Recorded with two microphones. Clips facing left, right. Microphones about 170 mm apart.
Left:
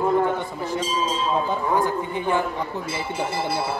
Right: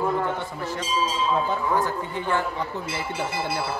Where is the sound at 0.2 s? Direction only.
15° left (ahead or behind).